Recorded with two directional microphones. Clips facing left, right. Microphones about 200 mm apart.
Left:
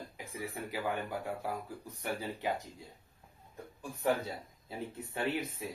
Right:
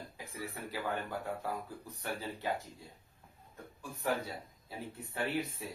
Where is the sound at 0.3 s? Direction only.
15° left (ahead or behind).